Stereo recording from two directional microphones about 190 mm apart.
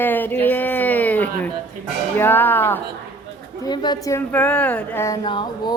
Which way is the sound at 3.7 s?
20° left (ahead or behind).